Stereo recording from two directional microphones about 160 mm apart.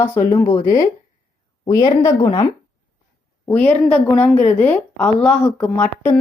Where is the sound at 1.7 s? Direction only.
20° left (ahead or behind).